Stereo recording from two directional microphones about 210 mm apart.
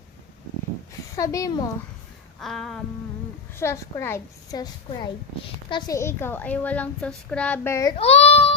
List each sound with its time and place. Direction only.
1.1 s a woman's voice: 15° left (ahead or behind)
2.4 s a sound: centre (ahead or behind)
3.6 s a woman's voice: 10° left (ahead or behind)
7.9 s child singing: 30° left (ahead or behind)